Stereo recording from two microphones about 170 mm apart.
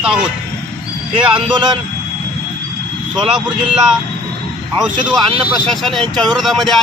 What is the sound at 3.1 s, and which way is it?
Speech, centre (ahead or behind).